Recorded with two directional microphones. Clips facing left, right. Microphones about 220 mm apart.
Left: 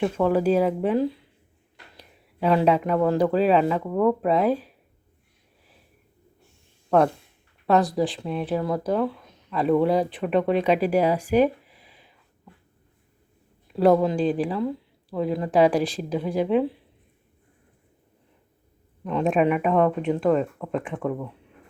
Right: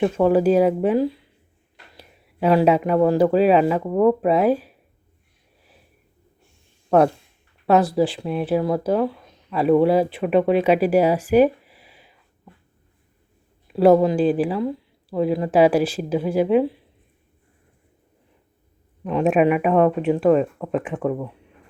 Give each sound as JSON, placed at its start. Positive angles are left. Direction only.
{"t": 0.0, "sound": "speech", "side_deg": -15}
{"t": 8.2, "sound": "speech", "side_deg": -10}
{"t": 14.0, "sound": "speech", "side_deg": -10}
{"t": 19.0, "sound": "speech", "side_deg": -15}